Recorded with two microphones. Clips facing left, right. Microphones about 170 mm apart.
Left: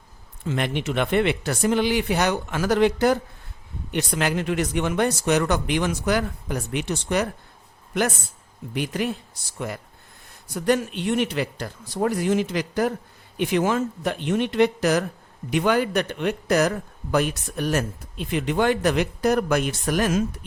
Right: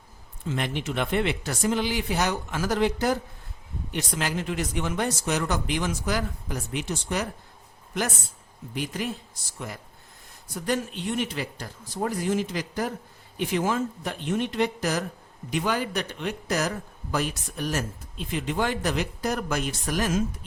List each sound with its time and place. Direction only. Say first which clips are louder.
0.4 s a man's voice: left 4 dB; 65° left (ahead or behind)
8.7 s a man's voice: left 5 dB; 65° left (ahead or behind)